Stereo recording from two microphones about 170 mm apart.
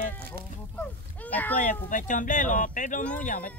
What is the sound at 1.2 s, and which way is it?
Speech, 10° left (ahead or behind).